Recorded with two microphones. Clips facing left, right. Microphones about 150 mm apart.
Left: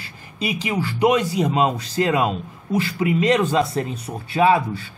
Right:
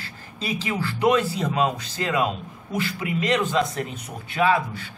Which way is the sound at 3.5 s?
30° left (ahead or behind).